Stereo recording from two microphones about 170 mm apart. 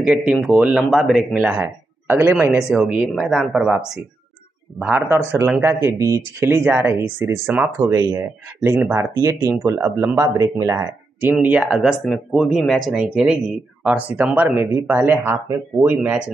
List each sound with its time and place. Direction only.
0.0 s speech: 5° right (ahead or behind)